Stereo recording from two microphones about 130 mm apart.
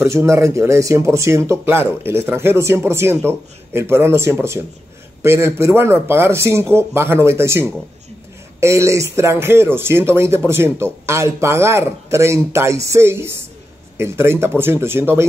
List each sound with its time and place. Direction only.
0.0 s speech: 20° right (ahead or behind)